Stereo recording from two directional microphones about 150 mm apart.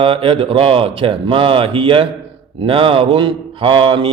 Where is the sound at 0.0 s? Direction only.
35° right (ahead or behind).